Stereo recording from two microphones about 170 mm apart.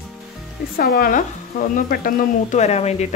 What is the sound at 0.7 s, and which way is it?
Speech, 60° left (ahead or behind).